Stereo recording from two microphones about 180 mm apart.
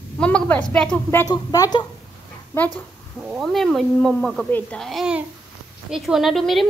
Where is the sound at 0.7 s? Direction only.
5° left (ahead or behind).